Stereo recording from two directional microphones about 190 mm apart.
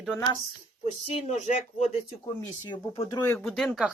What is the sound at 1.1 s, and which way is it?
Speech, 35° left (ahead or behind).